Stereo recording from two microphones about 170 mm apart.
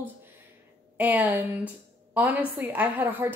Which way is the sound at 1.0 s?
10° right (ahead or behind).